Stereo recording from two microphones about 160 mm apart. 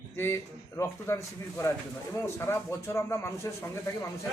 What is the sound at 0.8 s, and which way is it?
A man's voice, 15° left (ahead or behind).